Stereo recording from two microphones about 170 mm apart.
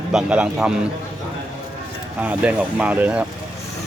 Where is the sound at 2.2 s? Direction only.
10° right (ahead or behind).